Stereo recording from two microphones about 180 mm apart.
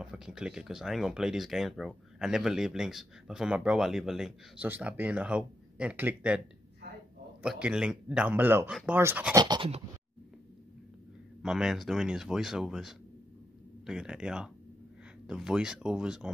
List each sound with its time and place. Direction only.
0.0 s speech: 5° right (ahead or behind)
7.4 s speech: 5° right (ahead or behind)
9.4 s a sound: 25° right (ahead or behind)
11.4 s speech: centre (ahead or behind)